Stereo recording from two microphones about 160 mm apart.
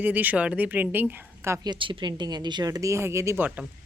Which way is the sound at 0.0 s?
10° right (ahead or behind).